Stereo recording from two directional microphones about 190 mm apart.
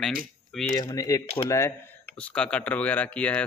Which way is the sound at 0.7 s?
20° left (ahead or behind).